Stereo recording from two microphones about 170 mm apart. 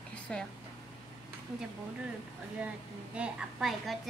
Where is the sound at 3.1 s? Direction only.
5° right (ahead or behind).